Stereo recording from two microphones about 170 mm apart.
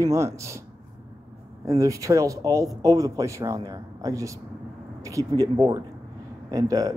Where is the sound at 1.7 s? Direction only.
20° right (ahead or behind).